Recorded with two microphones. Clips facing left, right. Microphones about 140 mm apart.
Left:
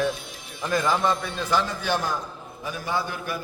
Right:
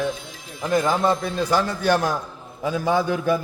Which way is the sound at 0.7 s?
25° right (ahead or behind).